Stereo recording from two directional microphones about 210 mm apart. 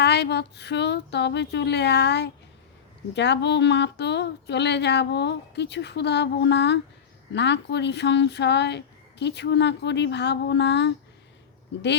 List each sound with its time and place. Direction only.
0.0 s speech: 50° left (ahead or behind)